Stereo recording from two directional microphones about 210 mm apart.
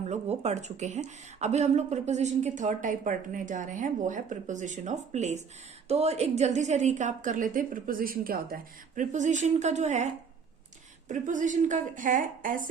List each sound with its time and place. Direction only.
0.1 s speech: 30° right (ahead or behind)
11.1 s speech: 40° right (ahead or behind)